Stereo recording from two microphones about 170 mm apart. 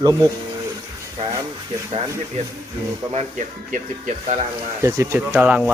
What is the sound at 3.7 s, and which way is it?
Speech, 45° right (ahead or behind).